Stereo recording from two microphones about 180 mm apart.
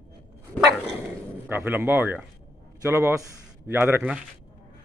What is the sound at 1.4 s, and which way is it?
A man's voice, 10° right (ahead or behind).